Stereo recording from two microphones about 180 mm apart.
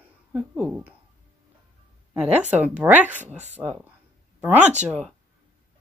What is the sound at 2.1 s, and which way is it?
Speech, 10° right (ahead or behind).